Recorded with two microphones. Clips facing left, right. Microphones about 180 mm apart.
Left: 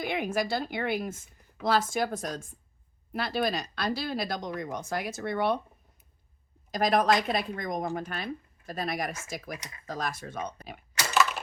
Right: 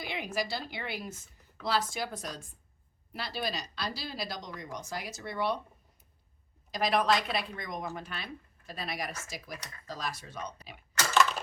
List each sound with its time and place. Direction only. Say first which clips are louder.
0.0 s a woman's voice: left 6 dB; 50° left (ahead or behind)
6.7 s a woman's voice: left 3 dB; 45° left (ahead or behind)
10.9 s a sound: even; 10° left (ahead or behind)